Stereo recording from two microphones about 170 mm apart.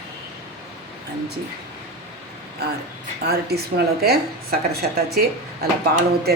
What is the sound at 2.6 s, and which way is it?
Speech, 70° right (ahead or behind).